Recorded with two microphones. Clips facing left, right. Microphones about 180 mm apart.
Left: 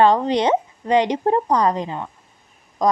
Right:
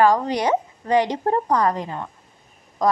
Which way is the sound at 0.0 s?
25° left (ahead or behind).